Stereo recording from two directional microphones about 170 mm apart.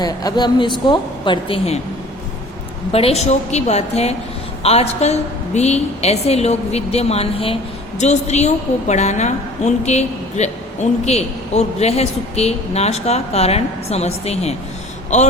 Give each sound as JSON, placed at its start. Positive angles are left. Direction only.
{"t": 0.0, "sound": "a woman's voice", "side_deg": 25}
{"t": 2.9, "sound": "a woman's voice", "side_deg": 35}